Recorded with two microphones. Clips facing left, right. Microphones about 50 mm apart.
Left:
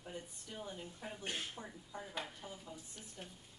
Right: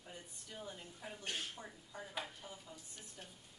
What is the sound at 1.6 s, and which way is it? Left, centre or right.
Speech, centre.